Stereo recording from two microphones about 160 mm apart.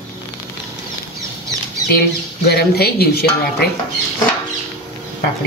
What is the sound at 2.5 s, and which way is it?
Speech, 85° left.